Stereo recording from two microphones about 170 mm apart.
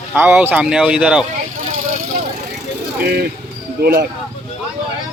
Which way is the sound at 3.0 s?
70° right (ahead or behind).